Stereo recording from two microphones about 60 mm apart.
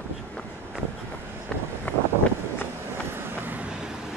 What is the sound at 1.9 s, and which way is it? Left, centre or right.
Vehicle, left.